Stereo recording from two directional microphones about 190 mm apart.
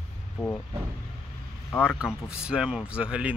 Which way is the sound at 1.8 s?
5° right (ahead or behind).